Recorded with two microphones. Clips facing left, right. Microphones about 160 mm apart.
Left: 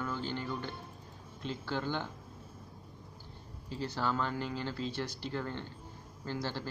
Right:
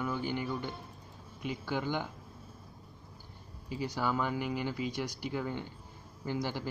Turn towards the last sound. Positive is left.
turn(degrees=-15)  # may be behind; listen again after turning